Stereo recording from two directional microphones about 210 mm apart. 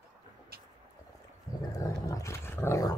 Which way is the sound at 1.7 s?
15° left (ahead or behind).